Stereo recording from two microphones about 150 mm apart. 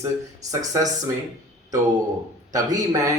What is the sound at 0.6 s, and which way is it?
Speech, 25° right (ahead or behind).